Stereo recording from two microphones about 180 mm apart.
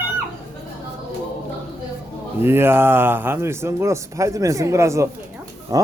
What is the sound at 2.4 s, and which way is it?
Speech, 15° right (ahead or behind).